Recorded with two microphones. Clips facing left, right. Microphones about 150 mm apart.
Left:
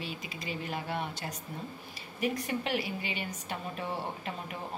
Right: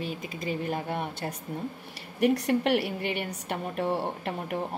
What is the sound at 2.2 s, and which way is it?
A woman's voice, 70° right (ahead or behind).